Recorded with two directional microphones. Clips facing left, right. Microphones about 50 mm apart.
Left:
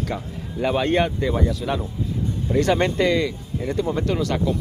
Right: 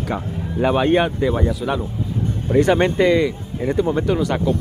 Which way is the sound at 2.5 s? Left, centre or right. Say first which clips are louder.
Right 4 dB; right.